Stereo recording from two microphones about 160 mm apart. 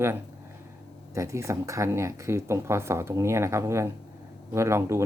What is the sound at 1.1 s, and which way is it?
Speech, 20° right (ahead or behind).